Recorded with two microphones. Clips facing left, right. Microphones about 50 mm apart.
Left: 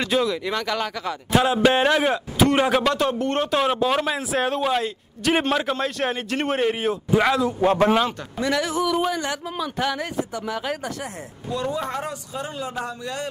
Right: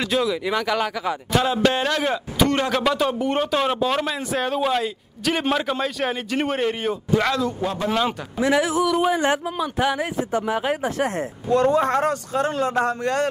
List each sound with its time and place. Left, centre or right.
0.0 s speech: centre
1.3 s speech: centre
2.8 s a man's voice: centre
7.6 s speech: left
8.4 s a man's voice: centre
10.4 s speech: right
11.0 s speech: right